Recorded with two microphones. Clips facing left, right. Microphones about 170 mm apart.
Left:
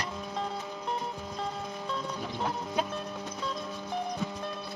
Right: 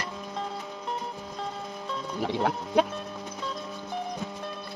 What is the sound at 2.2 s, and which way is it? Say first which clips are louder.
Music: right 6 dB; 70° right (ahead or behind).